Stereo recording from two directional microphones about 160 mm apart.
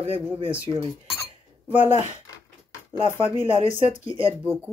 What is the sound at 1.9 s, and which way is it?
Speech, 45° left (ahead or behind).